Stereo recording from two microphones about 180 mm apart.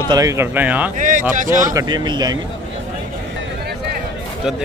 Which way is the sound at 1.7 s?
25° right (ahead or behind).